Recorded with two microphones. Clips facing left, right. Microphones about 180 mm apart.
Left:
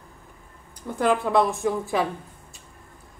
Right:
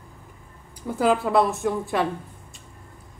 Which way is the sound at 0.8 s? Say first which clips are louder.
Right 1 dB; 5° right (ahead or behind).